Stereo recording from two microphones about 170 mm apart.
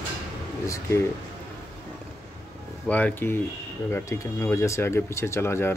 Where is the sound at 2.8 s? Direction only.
10° left (ahead or behind).